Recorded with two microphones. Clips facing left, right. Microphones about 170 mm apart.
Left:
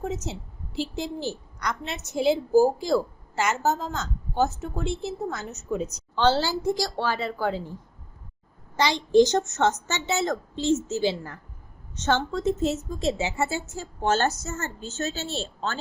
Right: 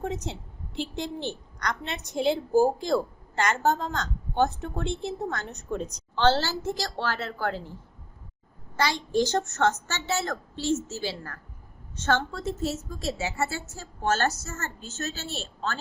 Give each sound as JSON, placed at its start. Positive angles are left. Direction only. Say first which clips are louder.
{"t": 0.0, "sound": "a woman's voice", "louder": "left 1 dB", "side_deg": 0}